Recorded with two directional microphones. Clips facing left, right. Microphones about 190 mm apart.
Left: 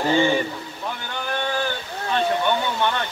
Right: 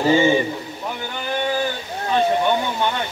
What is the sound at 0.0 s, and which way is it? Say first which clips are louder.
Mantra: right 3 dB; 15° right (ahead or behind).